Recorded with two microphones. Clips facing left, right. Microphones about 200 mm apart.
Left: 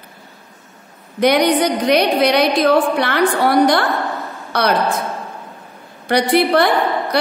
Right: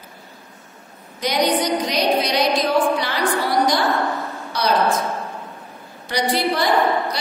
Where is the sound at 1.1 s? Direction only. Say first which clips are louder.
Left 6 dB; 60° left (ahead or behind).